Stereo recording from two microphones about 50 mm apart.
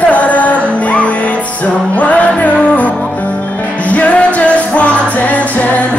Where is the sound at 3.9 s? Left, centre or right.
Left.